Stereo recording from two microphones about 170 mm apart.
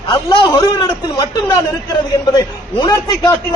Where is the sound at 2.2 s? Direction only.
20° left (ahead or behind).